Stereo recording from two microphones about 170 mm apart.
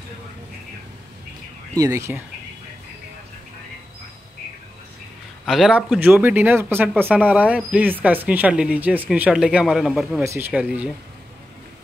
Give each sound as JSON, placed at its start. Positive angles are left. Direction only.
{"t": 1.8, "sound": "speech", "side_deg": -15}
{"t": 5.4, "sound": "speech", "side_deg": 0}
{"t": 10.2, "sound": "speech", "side_deg": -15}